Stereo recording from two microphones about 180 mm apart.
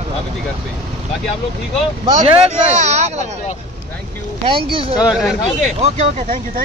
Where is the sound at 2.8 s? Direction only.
40° right (ahead or behind).